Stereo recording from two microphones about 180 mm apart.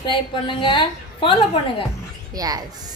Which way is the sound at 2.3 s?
20° right (ahead or behind).